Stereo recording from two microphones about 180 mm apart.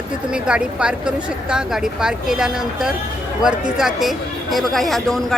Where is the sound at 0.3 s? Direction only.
5° right (ahead or behind).